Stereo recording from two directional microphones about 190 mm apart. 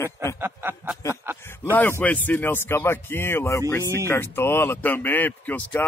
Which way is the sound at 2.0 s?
10° left (ahead or behind).